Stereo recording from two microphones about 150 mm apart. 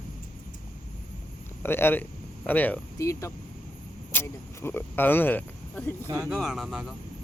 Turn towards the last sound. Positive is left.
turn(degrees=0)  # may be behind; listen again after turning